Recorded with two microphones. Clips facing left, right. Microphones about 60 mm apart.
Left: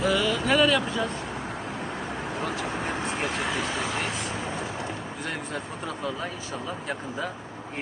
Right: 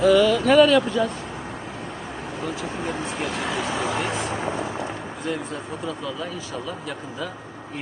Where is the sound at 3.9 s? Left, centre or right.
Right.